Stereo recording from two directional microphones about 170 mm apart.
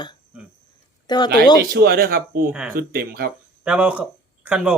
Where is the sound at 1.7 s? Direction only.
65° right (ahead or behind).